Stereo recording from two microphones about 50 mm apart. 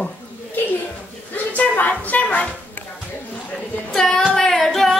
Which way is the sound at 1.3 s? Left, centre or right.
Left.